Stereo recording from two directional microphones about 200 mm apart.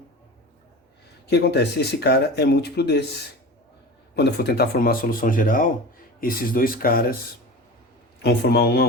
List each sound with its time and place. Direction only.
1.3 s speech: 55° left (ahead or behind)
4.1 s speech: 55° left (ahead or behind)
8.2 s speech: 55° left (ahead or behind)